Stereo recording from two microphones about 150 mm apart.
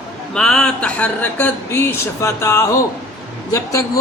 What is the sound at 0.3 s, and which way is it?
A man's voice, 5° left (ahead or behind).